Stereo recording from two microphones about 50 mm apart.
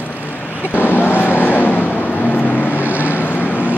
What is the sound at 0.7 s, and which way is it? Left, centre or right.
Vehicle, left.